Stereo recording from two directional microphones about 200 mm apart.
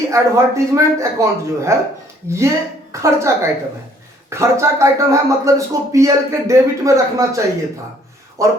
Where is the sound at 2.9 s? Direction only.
15° right (ahead or behind).